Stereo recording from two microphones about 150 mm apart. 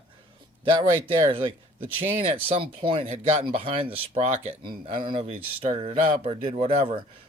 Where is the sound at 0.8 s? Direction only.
35° right (ahead or behind).